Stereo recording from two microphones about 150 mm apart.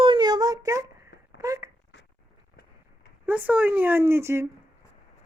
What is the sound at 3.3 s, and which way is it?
Speech, 10° right (ahead or behind).